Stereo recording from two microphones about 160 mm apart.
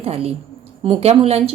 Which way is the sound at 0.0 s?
40° right (ahead or behind).